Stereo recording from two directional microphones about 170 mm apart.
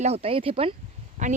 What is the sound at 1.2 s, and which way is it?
Speech, 45° right (ahead or behind).